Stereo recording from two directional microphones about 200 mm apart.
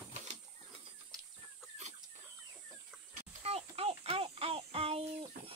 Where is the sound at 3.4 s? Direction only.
30° right (ahead or behind).